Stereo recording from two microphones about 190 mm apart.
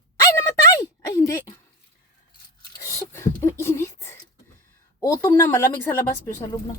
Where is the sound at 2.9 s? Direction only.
15° left (ahead or behind).